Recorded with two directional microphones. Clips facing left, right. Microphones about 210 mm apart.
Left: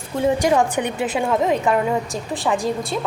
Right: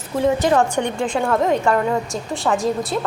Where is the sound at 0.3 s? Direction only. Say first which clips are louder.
Right 1 dB; 10° left (ahead or behind).